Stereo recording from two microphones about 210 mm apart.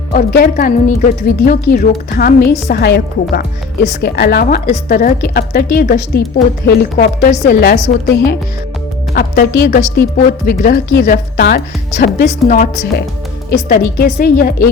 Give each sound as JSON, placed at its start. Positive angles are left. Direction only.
{"t": 0.1, "sound": "speech", "side_deg": 45}
{"t": 7.3, "sound": "speech", "side_deg": 30}
{"t": 7.6, "sound": "speech", "side_deg": 50}